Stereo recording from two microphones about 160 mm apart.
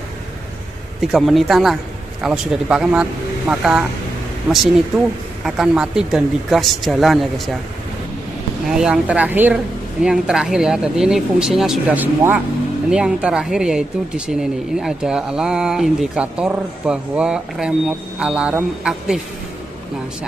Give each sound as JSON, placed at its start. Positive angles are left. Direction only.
{"t": 1.1, "sound": "speech", "side_deg": 0}
{"t": 8.6, "sound": "speech", "side_deg": -5}